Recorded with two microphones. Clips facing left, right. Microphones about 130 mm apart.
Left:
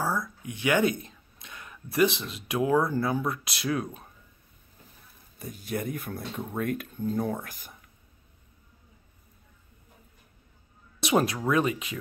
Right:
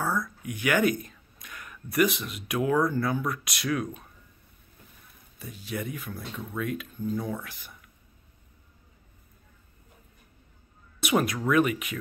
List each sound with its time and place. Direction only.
0.1 s speech: 25° left (ahead or behind)
5.4 s speech: 45° left (ahead or behind)
11.0 s speech: 30° left (ahead or behind)